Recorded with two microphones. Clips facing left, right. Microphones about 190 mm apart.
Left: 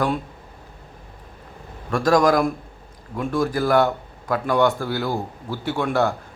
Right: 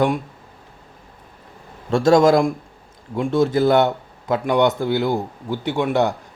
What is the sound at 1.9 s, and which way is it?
Speech, 25° right (ahead or behind).